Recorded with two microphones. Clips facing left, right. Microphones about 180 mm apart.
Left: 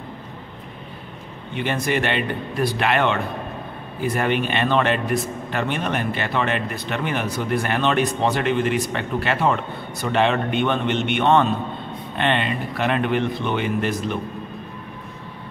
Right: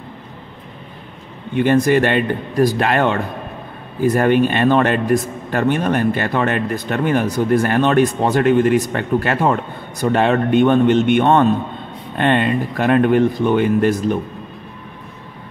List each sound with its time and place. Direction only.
1.5 s a man's voice: 45° right (ahead or behind)